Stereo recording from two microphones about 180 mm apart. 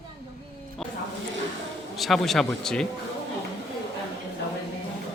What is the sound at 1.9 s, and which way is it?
Speech, centre (ahead or behind).